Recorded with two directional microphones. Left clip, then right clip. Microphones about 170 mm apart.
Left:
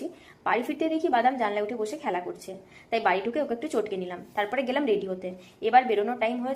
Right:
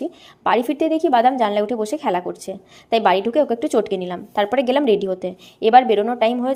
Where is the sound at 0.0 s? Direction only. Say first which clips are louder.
Right 9 dB; 40° right (ahead or behind).